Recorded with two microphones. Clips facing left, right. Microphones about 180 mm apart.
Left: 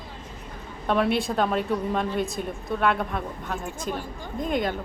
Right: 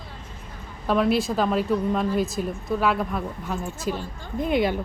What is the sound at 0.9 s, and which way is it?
A woman's voice, centre (ahead or behind).